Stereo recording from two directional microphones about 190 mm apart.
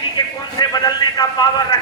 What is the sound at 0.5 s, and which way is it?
A man's voice, 20° left (ahead or behind).